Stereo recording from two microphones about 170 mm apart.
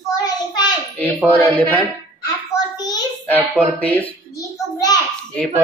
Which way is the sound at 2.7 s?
25° left (ahead or behind).